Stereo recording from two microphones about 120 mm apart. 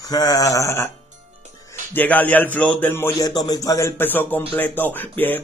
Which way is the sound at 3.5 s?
25° left (ahead or behind).